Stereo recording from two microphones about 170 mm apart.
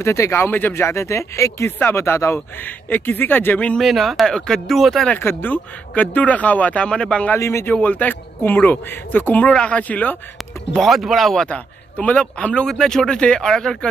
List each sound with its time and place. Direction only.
0.0 s a man's voice: 15° left (ahead or behind)